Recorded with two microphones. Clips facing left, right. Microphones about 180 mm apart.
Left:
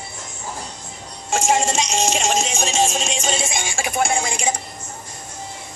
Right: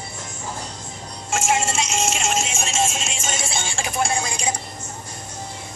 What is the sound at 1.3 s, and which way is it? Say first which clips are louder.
Music: left 3 dB; 35° left (ahead or behind).